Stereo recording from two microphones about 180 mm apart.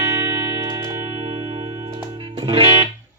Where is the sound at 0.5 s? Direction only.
30° right (ahead or behind).